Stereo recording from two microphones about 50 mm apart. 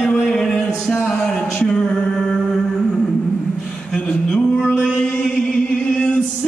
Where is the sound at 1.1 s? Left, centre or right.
Centre.